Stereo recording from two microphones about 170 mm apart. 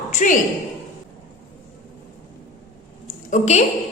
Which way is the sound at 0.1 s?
50° left (ahead or behind).